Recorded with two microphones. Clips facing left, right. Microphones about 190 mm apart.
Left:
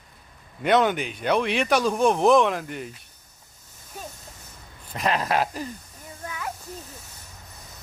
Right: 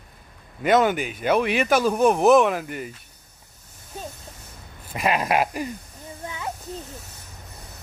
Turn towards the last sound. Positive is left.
turn(degrees=-25)  # may be behind; listen again after turning